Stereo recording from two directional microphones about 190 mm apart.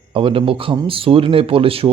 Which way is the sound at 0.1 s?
30° right (ahead or behind).